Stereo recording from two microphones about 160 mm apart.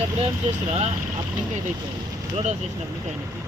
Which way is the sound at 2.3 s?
45° right (ahead or behind).